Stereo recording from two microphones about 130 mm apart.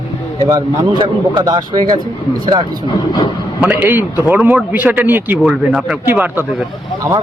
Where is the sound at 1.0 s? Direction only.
30° right (ahead or behind).